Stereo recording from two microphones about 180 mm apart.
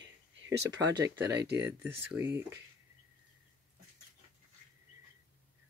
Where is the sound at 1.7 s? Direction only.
10° right (ahead or behind).